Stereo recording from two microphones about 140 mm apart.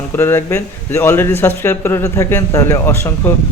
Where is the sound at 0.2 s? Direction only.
15° left (ahead or behind).